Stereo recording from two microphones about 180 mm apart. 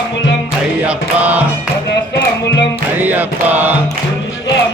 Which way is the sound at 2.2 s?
75° left (ahead or behind).